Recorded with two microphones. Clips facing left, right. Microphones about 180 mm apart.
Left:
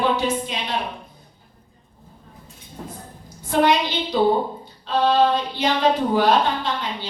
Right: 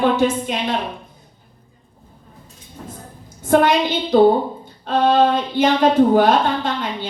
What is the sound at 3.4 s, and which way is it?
A woman's voice, 50° right (ahead or behind).